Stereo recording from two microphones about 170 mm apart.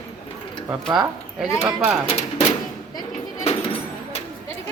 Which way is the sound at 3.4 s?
35° left (ahead or behind).